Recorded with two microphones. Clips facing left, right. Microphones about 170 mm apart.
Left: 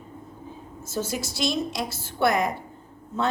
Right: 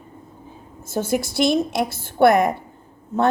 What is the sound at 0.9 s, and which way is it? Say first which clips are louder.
A woman's voice: right 7 dB; 55° right (ahead or behind).